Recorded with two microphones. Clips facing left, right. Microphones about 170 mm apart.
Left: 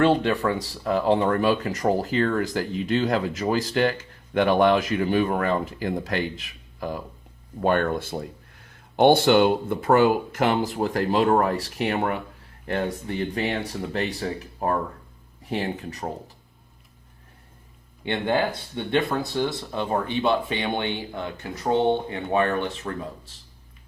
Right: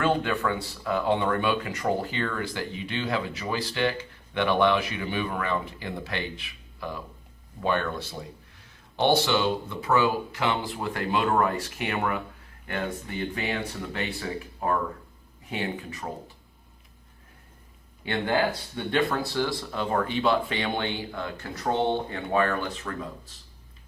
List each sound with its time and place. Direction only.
0.0 s speech: 35° left (ahead or behind)
15.4 s speech: 35° left (ahead or behind)
18.0 s speech: 20° left (ahead or behind)